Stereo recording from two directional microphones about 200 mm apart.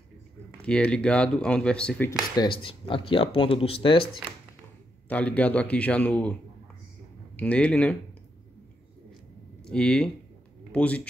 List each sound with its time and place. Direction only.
0.6 s speech: 5° left (ahead or behind)
2.3 s speech: 25° left (ahead or behind)
5.0 s a man's voice: 5° left (ahead or behind)
7.3 s speech: 5° left (ahead or behind)
9.7 s speech: 5° left (ahead or behind)